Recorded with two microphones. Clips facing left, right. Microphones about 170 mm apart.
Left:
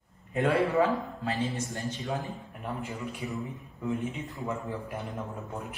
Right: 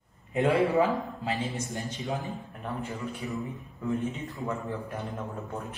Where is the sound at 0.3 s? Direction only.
20° right (ahead or behind).